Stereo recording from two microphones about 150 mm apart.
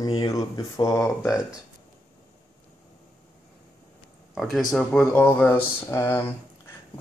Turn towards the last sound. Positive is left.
turn(degrees=15)  # may be behind; listen again after turning